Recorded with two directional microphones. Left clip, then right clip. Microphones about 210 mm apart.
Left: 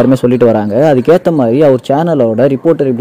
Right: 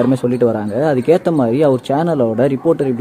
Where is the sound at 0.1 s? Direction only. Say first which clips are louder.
Left 7 dB; 25° left (ahead or behind).